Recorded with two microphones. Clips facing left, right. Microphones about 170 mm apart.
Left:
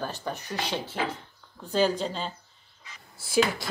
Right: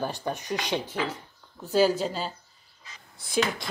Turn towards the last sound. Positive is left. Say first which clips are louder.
# left 2 dB
turn(degrees=5)  # may be behind; listen again after turning